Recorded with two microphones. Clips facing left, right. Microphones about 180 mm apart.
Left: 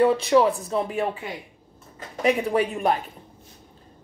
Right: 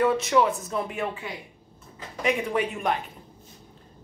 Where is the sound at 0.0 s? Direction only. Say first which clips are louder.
Left 4 dB; 30° left (ahead or behind).